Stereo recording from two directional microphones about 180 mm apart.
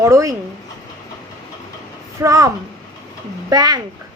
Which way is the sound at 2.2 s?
15° right (ahead or behind).